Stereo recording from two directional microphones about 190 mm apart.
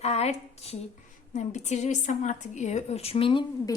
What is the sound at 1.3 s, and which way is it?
A woman's voice, 40° left (ahead or behind).